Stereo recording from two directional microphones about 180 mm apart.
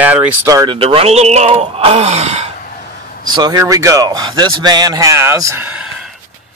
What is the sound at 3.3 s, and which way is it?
Speech, 25° right (ahead or behind).